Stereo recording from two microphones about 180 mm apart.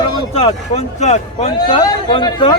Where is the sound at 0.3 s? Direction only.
35° left (ahead or behind).